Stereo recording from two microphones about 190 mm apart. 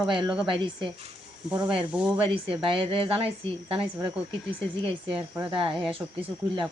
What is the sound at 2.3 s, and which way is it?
A woman's voice, 25° right (ahead or behind).